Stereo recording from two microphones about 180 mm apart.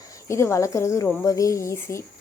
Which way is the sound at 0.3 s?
15° left (ahead or behind).